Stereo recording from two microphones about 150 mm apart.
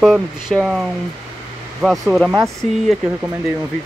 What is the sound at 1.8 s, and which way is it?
Speech, centre (ahead or behind).